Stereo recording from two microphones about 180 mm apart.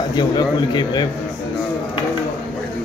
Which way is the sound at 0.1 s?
25° left (ahead or behind).